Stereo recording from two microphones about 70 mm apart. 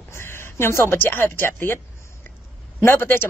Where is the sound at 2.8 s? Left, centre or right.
Left.